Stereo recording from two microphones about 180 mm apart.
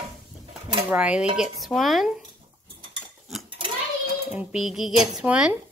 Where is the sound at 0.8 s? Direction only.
5° right (ahead or behind).